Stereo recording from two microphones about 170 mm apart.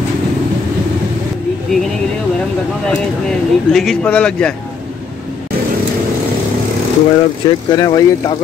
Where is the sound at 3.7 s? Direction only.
5° left (ahead or behind).